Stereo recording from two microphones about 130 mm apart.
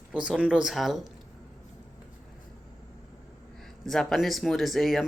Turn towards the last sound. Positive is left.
turn(degrees=0)  # may be behind; listen again after turning